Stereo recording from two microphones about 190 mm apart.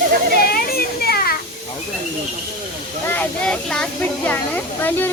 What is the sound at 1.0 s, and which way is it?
Children playing, 55° left (ahead or behind).